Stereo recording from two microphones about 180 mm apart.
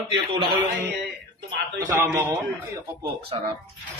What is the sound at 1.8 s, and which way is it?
Speech, 15° right (ahead or behind).